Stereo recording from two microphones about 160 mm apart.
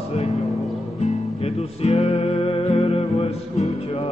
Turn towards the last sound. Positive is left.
turn(degrees=40)  # may be behind; listen again after turning